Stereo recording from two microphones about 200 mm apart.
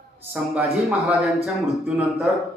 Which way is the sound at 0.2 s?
10° right (ahead or behind).